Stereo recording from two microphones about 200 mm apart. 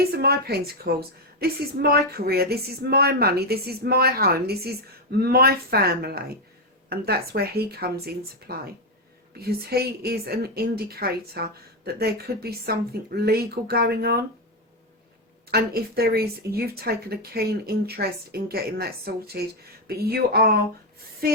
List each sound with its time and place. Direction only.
0.1 s a woman's voice: 50° right (ahead or behind)
15.4 s a woman's voice: 50° right (ahead or behind)